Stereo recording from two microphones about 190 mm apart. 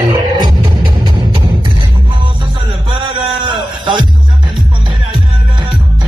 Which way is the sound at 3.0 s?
25° right (ahead or behind).